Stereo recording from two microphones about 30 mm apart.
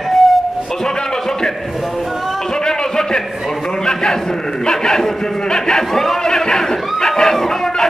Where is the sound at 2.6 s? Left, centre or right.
Left.